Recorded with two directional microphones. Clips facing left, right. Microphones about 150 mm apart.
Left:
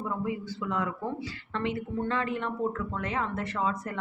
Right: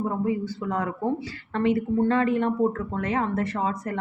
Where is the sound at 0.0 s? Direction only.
40° right (ahead or behind).